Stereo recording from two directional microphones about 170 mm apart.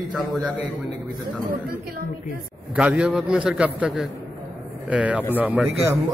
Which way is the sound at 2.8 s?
5° right (ahead or behind).